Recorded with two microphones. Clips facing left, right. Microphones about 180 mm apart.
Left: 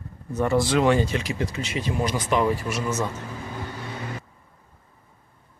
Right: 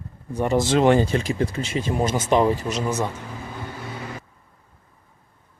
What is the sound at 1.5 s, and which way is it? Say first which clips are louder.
Speech: right 2 dB; 50° right (ahead or behind).